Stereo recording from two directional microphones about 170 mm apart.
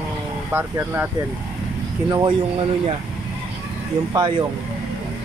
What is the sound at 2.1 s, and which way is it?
Speech, 30° right (ahead or behind).